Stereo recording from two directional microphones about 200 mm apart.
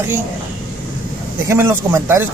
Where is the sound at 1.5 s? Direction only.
10° right (ahead or behind).